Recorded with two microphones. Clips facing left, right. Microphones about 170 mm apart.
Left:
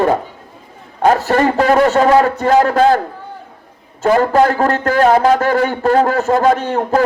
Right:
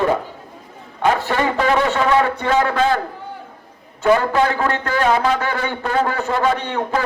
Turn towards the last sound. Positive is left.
turn(degrees=45)  # may be behind; listen again after turning